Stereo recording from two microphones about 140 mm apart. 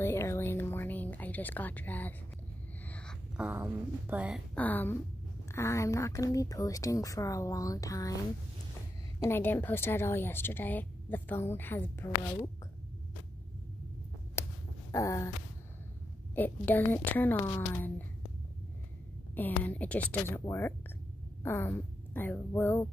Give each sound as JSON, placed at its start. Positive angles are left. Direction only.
{"t": 0.0, "sound": "music", "side_deg": 20}
{"t": 3.3, "sound": "speech", "side_deg": -10}
{"t": 4.6, "sound": "a woman's voice", "side_deg": 15}
{"t": 9.2, "sound": "a woman's voice", "side_deg": 15}
{"t": 14.4, "sound": "hum", "side_deg": 20}
{"t": 14.9, "sound": "a sound", "side_deg": 20}
{"t": 16.3, "sound": "a woman's voice", "side_deg": 15}
{"t": 19.3, "sound": "a woman's voice", "side_deg": 10}